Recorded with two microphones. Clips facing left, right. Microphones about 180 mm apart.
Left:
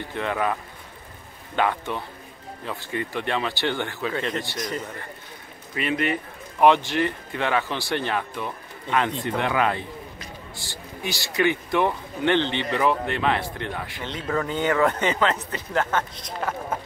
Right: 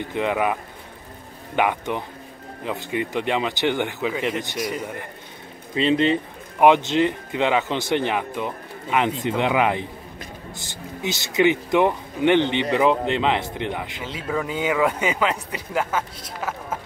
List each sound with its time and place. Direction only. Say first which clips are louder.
0.1 s speech: right 3 dB; 15° right (ahead or behind)
5.8 s speech: right 6 dB; 25° right (ahead or behind)
14.0 s speech: left 1 dB; 5° right (ahead or behind)